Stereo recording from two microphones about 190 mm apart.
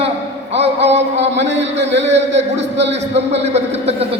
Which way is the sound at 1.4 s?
70° right (ahead or behind).